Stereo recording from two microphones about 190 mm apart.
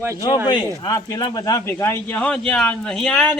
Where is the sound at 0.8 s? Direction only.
15° left (ahead or behind).